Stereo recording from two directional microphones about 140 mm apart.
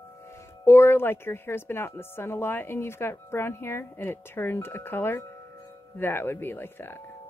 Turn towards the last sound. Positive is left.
turn(degrees=15)  # may be behind; listen again after turning